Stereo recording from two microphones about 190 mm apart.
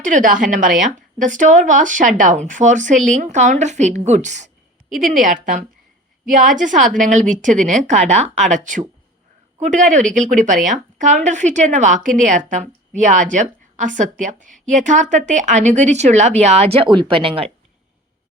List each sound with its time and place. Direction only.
0.0 s a woman's voice: 45° right (ahead or behind)